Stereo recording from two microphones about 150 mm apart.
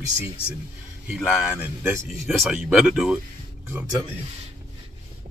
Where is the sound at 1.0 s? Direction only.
10° right (ahead or behind).